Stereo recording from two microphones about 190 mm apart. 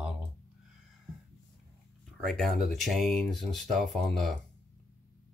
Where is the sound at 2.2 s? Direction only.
Centre (ahead or behind).